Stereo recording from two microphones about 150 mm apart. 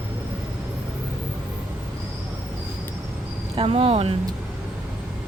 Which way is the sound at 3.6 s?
40° right (ahead or behind).